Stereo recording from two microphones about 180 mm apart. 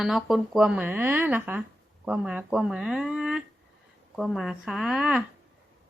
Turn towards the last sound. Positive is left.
turn(degrees=-5)  # may be behind; listen again after turning